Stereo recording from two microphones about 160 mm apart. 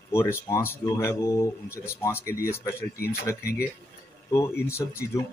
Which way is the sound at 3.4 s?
75° left (ahead or behind).